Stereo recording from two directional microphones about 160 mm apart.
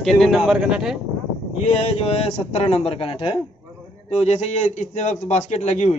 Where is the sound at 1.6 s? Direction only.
40° left (ahead or behind).